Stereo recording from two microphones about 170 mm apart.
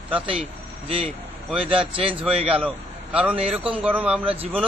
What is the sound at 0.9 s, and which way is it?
Speech, 35° right (ahead or behind).